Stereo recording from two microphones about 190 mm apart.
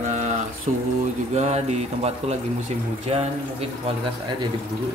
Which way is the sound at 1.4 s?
35° right (ahead or behind).